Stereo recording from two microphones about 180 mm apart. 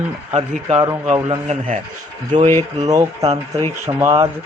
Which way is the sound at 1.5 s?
35° right (ahead or behind).